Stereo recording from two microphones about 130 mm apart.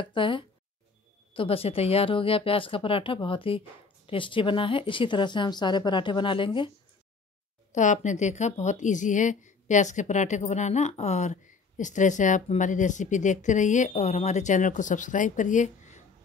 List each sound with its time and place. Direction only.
0.0 s speech: 40° left (ahead or behind)
7.7 s a woman's voice: 70° left (ahead or behind)